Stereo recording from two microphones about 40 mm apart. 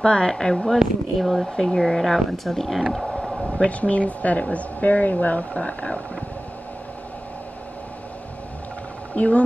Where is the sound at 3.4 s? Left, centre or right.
Left.